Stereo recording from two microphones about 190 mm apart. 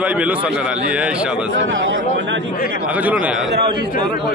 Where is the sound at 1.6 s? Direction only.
90° right.